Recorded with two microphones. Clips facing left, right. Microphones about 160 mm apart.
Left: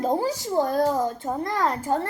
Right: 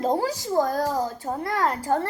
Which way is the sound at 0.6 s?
20° left (ahead or behind).